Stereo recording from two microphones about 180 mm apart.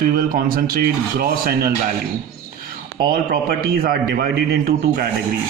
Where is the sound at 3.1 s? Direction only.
60° right (ahead or behind).